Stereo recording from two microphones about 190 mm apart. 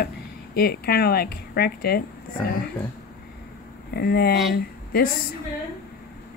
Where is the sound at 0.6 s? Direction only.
55° left (ahead or behind).